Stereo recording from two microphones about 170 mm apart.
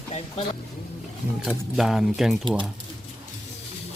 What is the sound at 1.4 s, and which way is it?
Speech, centre (ahead or behind).